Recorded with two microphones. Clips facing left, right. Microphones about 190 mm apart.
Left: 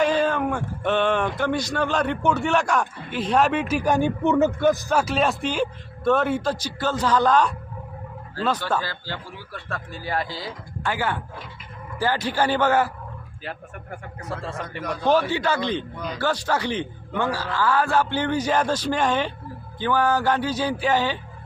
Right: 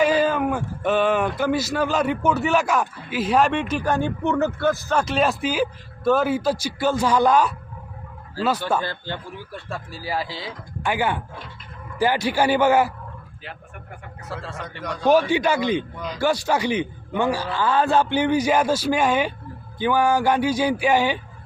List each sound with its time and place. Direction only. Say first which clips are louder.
0.0 s a man's voice: right 2 dB; 5° right (ahead or behind)
8.8 s a man's voice: right 3 dB; 20° right (ahead or behind); by 10.5 s centre (ahead or behind)
10.8 s a man's voice: right 3 dB; 15° right (ahead or behind)
14.3 s speech: left 2 dB; centre (ahead or behind)
15.0 s a man's voice: right 3 dB; 15° right (ahead or behind)